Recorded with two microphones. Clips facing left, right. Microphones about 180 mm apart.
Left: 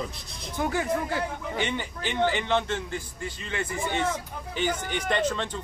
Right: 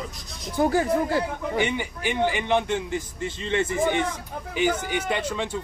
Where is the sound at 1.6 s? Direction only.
10° right (ahead or behind).